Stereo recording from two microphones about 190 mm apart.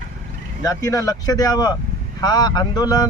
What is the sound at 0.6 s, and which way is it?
Speech, 15° left (ahead or behind).